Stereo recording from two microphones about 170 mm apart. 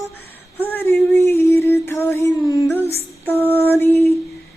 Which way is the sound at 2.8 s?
35° right (ahead or behind).